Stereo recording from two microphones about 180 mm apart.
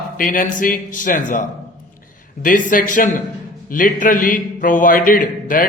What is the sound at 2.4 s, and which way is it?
Speech, 50° left (ahead or behind).